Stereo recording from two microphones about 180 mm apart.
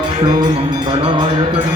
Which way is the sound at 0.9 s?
25° right (ahead or behind).